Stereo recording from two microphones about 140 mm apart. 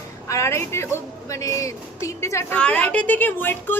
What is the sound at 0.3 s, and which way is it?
Speech, 20° left (ahead or behind).